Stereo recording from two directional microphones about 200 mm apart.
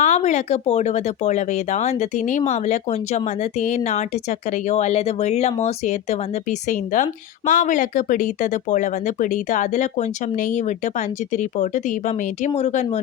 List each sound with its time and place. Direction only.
0.0 s speech: 35° left (ahead or behind)